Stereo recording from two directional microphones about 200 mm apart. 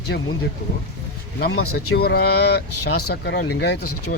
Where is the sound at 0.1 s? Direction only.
60° left (ahead or behind).